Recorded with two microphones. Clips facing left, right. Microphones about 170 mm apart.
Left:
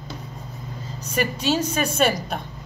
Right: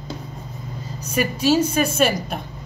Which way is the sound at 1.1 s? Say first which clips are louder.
Right 4 dB; 10° right (ahead or behind).